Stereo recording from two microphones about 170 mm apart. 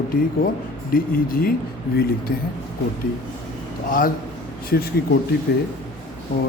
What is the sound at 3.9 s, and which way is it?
Speech, 55° left (ahead or behind).